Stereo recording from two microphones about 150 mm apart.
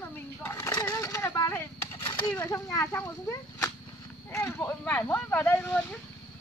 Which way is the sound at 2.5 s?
20° left (ahead or behind).